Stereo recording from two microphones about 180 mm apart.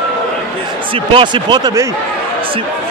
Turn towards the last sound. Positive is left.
turn(degrees=-25)  # may be behind; listen again after turning